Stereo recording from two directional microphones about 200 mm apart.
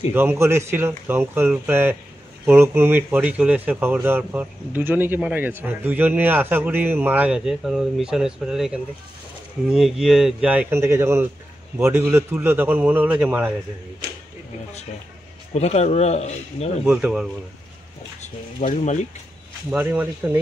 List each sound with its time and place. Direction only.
0.1 s speech: 10° right (ahead or behind)
15.5 s speech: 35° left (ahead or behind)
16.8 s speech: 5° right (ahead or behind)
18.2 s speech: 40° left (ahead or behind)
19.7 s speech: 10° right (ahead or behind)